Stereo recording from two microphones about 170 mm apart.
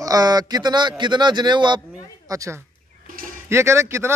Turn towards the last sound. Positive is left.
turn(degrees=-15)  # may be behind; listen again after turning